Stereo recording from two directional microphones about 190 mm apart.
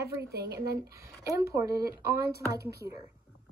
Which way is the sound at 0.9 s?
15° right (ahead or behind).